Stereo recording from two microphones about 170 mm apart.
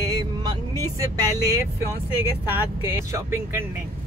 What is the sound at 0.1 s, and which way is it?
Vehicle, 25° right (ahead or behind).